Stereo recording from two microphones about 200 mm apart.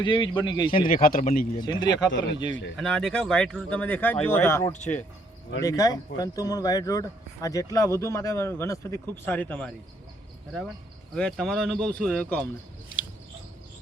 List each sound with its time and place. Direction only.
0.0 s speech: 25° left (ahead or behind)
0.9 s speech: 45° left (ahead or behind)
1.9 s speech: 65° left (ahead or behind)
2.7 s speech: centre (ahead or behind)
11.1 s speech: 5° left (ahead or behind)